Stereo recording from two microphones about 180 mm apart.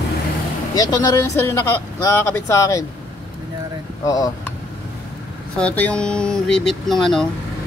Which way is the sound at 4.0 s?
20° left (ahead or behind).